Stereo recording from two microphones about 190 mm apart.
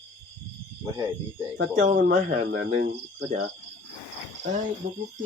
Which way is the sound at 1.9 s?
50° right (ahead or behind).